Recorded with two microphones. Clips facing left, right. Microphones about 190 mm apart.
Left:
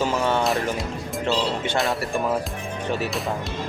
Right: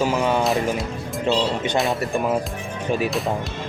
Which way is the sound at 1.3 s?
15° right (ahead or behind).